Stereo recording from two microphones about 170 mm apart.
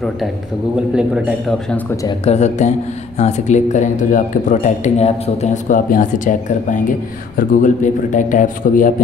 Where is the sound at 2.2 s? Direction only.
40° left (ahead or behind).